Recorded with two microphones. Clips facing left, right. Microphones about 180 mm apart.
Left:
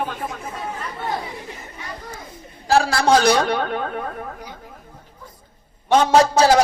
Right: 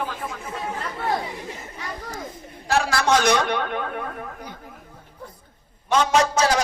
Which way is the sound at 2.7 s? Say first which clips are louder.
Left 4 dB; 35° left (ahead or behind).